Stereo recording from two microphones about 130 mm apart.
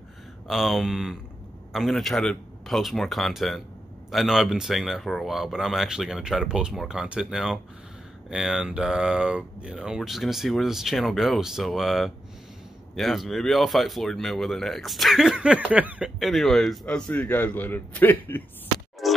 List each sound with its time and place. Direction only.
0.5 s speech: centre (ahead or behind)
16.2 s a man's voice: centre (ahead or behind)
19.0 s music: centre (ahead or behind)